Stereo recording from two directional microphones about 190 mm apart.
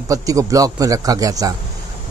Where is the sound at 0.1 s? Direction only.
15° right (ahead or behind).